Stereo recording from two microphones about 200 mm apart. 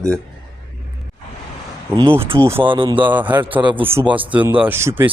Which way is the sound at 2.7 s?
25° right (ahead or behind).